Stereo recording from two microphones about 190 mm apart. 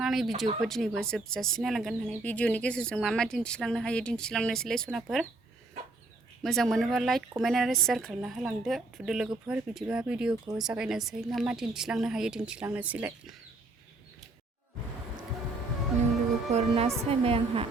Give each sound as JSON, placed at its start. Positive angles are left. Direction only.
{"t": 0.0, "sound": "speech", "side_deg": 0}
{"t": 6.4, "sound": "speech", "side_deg": 0}
{"t": 16.5, "sound": "a woman's voice", "side_deg": -35}